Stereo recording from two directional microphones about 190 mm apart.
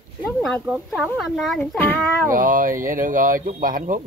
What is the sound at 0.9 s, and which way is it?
Speech, centre (ahead or behind).